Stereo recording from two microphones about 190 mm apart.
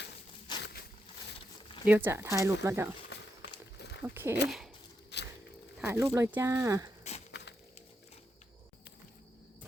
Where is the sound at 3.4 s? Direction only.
60° left (ahead or behind).